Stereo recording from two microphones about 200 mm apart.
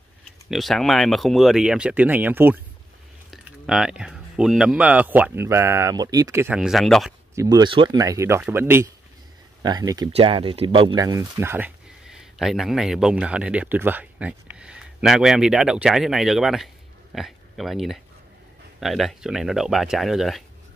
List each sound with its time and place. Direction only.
0.2 s speech: centre (ahead or behind)
7.3 s speech: 20° right (ahead or behind); by 20.4 s centre (ahead or behind)